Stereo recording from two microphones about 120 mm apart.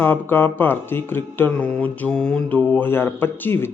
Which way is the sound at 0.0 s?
15° left (ahead or behind).